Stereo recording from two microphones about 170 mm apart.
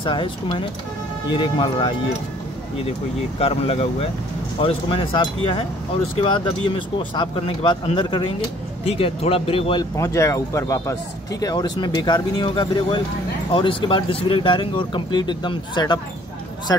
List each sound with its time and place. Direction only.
0.0 s speech: 30° left (ahead or behind)
3.3 s speech: 35° left (ahead or behind)
9.9 s speech: 15° left (ahead or behind)